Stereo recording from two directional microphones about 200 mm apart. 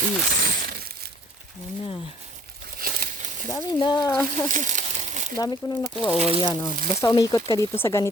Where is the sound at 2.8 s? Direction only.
45° right (ahead or behind).